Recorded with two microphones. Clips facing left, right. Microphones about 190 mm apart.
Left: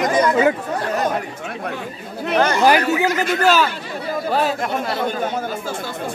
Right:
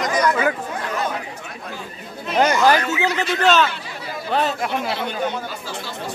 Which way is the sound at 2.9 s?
45° left (ahead or behind).